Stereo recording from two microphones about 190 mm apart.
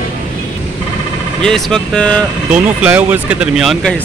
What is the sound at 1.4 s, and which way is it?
Speech, 5° left (ahead or behind).